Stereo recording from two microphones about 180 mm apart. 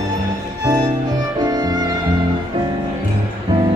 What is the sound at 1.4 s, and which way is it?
Music, 20° right (ahead or behind).